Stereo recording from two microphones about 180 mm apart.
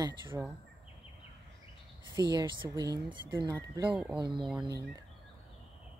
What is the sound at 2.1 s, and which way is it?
Speech, 20° right (ahead or behind).